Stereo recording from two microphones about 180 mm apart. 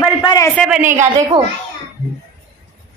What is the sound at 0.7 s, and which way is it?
Speech, 10° right (ahead or behind).